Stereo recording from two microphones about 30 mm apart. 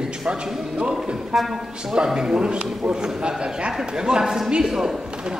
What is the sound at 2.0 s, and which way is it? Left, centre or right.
A man's voice, right.